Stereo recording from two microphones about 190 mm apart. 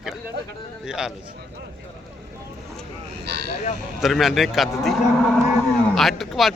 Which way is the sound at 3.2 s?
60° right (ahead or behind).